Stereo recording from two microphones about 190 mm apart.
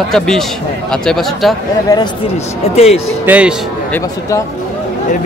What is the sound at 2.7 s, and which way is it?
Speech, 35° left (ahead or behind).